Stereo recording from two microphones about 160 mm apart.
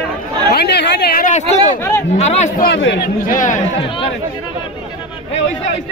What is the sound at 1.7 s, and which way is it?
Speech, 15° left (ahead or behind).